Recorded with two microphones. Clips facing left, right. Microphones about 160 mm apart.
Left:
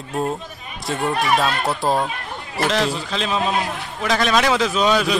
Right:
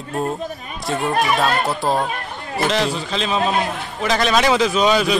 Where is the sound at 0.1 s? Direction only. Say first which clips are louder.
Even; centre (ahead or behind).